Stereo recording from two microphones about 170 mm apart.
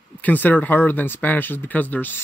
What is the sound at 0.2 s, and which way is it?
A man's voice, 10° left (ahead or behind).